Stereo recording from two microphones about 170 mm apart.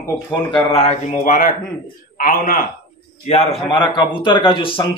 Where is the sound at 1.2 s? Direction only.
50° left (ahead or behind).